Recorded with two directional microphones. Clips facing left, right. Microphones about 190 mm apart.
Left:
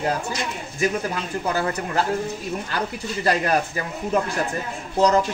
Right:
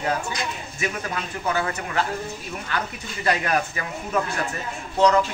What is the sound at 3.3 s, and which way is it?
Speech, 35° left (ahead or behind).